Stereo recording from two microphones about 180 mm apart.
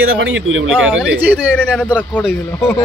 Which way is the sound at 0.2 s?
90° right.